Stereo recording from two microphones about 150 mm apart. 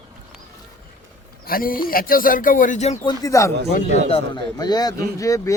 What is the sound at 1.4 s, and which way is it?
Speech, 75° left (ahead or behind).